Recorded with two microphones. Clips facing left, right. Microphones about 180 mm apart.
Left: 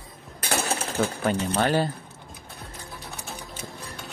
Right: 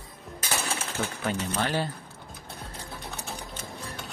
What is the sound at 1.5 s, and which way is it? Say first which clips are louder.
Speech: left 6 dB; 45° left (ahead or behind).